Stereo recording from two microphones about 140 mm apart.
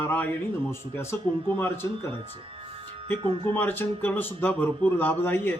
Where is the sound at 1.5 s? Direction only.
15° left (ahead or behind).